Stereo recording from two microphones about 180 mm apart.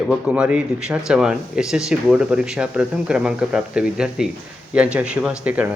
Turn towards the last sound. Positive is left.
turn(degrees=-10)  # may be behind; listen again after turning